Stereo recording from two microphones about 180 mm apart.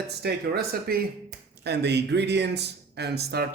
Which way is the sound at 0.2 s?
60° right (ahead or behind).